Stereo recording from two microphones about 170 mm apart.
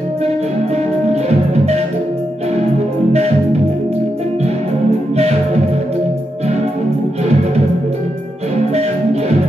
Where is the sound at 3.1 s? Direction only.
40° right (ahead or behind).